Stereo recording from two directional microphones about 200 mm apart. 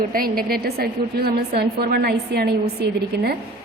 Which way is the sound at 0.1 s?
45° right (ahead or behind).